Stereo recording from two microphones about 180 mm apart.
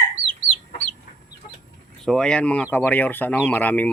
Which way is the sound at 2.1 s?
5° left (ahead or behind).